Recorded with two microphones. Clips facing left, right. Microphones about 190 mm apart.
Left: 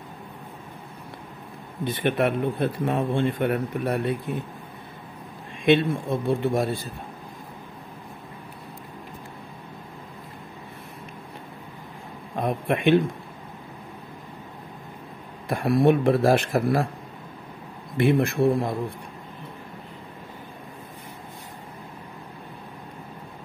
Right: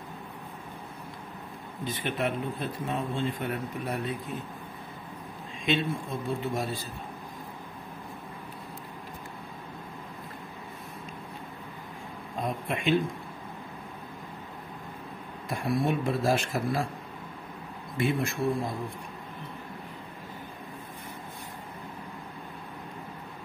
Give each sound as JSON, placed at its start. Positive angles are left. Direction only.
{"t": 1.9, "sound": "speech", "side_deg": 60}
{"t": 5.7, "sound": "speech", "side_deg": 65}
{"t": 12.4, "sound": "speech", "side_deg": 60}
{"t": 15.4, "sound": "speech", "side_deg": 65}
{"t": 17.9, "sound": "speech", "side_deg": 60}